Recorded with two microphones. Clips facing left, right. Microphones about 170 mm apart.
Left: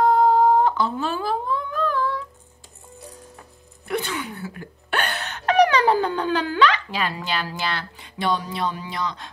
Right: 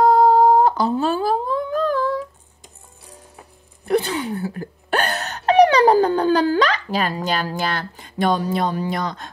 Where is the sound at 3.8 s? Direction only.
35° right (ahead or behind).